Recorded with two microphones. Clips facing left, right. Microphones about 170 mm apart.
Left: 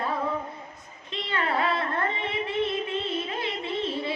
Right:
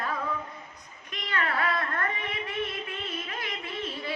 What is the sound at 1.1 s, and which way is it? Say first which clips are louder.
Carnatic music: left 3 dB; 25° left (ahead or behind).